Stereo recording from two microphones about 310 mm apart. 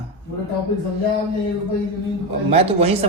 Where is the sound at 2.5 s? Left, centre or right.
Centre.